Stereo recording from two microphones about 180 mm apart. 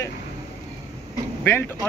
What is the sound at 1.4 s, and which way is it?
Speech, 15° left (ahead or behind).